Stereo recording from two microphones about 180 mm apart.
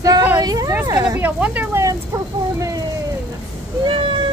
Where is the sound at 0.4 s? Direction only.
20° right (ahead or behind).